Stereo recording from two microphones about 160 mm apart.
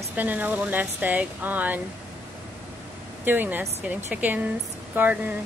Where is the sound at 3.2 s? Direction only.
10° right (ahead or behind).